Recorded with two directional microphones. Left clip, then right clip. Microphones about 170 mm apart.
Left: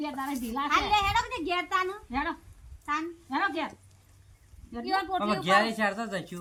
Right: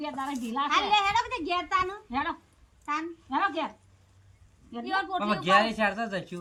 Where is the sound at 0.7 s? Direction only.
20° right (ahead or behind).